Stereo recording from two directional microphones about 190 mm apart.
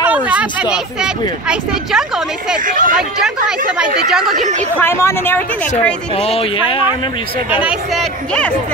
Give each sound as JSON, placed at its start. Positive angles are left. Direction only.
{"t": 0.0, "sound": "speech", "side_deg": -10}
{"t": 2.6, "sound": "speech", "side_deg": -45}
{"t": 3.0, "sound": "speech", "side_deg": -5}
{"t": 4.7, "sound": "a woman's voice", "side_deg": 15}
{"t": 6.1, "sound": "speech", "side_deg": 30}
{"t": 7.6, "sound": "speech", "side_deg": 0}